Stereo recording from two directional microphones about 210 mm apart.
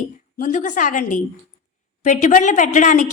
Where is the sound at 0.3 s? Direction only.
40° left (ahead or behind).